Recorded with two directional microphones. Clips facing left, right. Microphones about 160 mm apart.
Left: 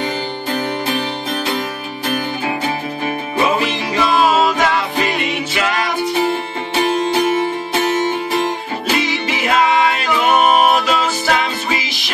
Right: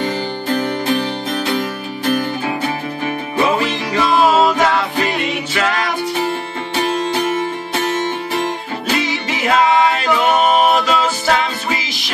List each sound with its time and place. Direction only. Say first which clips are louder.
3.5 s music: even; 15° left (ahead or behind)
10.4 s music: even; 10° left (ahead or behind)